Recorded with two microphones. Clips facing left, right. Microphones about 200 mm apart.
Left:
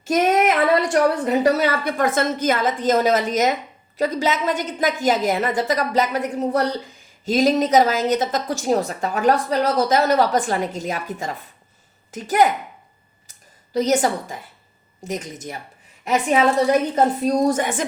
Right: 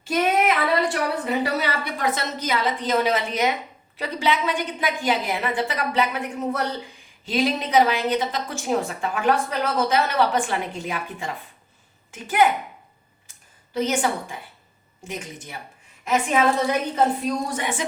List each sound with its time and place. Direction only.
0.0 s female singing: 45° left (ahead or behind)
0.4 s a woman's voice: 45° left (ahead or behind)
13.7 s a woman's voice: 40° left (ahead or behind)
16.9 s a woman's voice: 40° left (ahead or behind)